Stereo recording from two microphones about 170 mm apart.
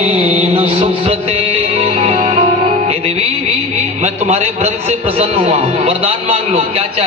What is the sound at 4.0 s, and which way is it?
Mantra, 40° right (ahead or behind).